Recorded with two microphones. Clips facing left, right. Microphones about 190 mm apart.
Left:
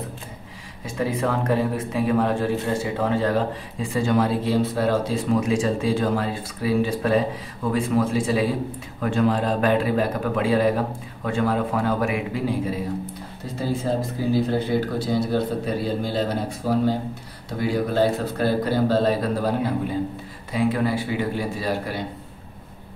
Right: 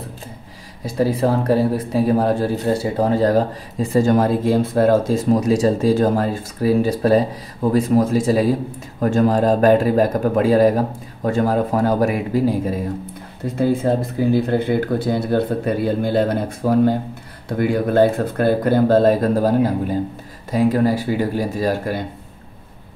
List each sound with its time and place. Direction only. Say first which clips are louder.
0.8 s a man's voice: right 6 dB; 35° right (ahead or behind)
13.6 s a man's voice: right 6 dB; 55° right (ahead or behind)